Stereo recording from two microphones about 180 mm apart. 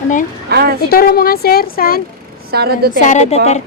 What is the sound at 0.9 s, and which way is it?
A woman's voice, 55° left (ahead or behind).